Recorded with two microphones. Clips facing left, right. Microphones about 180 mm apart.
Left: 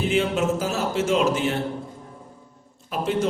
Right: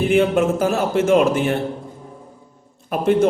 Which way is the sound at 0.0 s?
55° right (ahead or behind).